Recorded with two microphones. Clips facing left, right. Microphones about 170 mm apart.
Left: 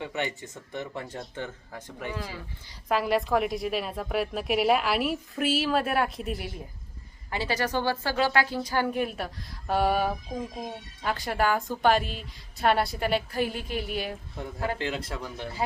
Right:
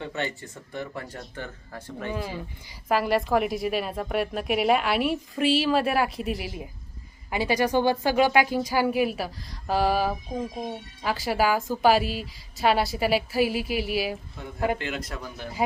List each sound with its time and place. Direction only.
0.0 s speech: 15° left (ahead or behind)
2.1 s speech: 15° right (ahead or behind)
2.9 s a woman's voice: centre (ahead or behind)
14.8 s speech: 30° left (ahead or behind)